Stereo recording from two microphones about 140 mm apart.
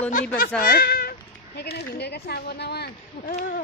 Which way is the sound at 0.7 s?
90° left.